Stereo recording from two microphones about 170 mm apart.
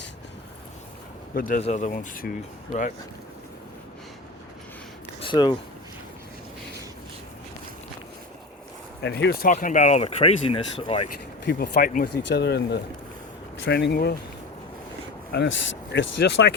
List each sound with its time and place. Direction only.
1.4 s speech: 50° left (ahead or behind)
5.2 s speech: 25° left (ahead or behind)
9.0 s speech: 90° left
9.5 s speech: 50° left (ahead or behind)
11.4 s speech: 60° left (ahead or behind)
12.3 s speech: 75° left (ahead or behind)
15.3 s speech: 90° left